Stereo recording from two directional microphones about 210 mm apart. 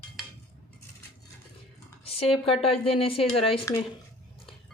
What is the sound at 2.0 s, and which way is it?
Speech, 25° left (ahead or behind).